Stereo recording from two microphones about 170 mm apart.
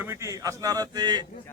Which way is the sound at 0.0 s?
15° right (ahead or behind).